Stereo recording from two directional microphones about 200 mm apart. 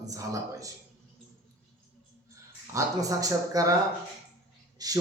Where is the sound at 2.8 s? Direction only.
15° right (ahead or behind).